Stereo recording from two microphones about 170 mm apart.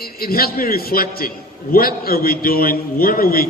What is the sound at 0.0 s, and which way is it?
A man's voice, 60° left (ahead or behind).